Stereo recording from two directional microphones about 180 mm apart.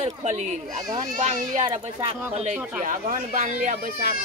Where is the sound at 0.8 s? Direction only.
20° right (ahead or behind).